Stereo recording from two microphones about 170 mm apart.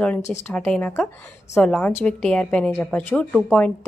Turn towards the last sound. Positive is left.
turn(degrees=5)  # may be behind; listen again after turning